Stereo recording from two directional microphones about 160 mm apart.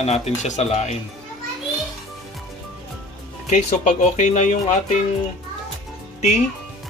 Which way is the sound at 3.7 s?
50° left (ahead or behind).